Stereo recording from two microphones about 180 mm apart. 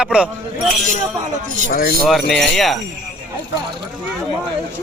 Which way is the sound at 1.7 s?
55° left (ahead or behind).